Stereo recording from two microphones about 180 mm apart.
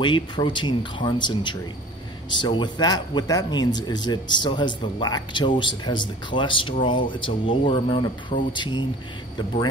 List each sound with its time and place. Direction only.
0.0 s speech: 25° left (ahead or behind)